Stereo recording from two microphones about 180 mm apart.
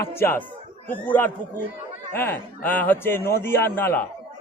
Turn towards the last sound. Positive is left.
turn(degrees=10)  # may be behind; listen again after turning